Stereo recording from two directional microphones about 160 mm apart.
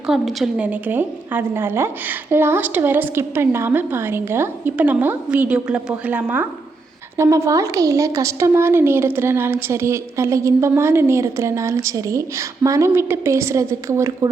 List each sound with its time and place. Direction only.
0.1 s a woman's voice: centre (ahead or behind); by 14.3 s 20° right (ahead or behind)